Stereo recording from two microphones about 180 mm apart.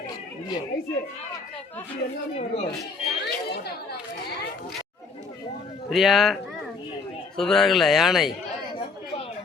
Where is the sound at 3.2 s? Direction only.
65° left (ahead or behind).